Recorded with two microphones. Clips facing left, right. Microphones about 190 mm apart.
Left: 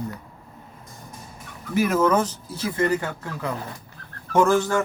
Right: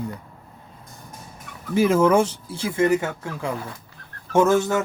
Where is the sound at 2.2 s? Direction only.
25° right (ahead or behind).